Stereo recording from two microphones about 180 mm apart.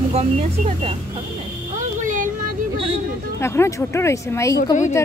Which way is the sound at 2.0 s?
45° right (ahead or behind).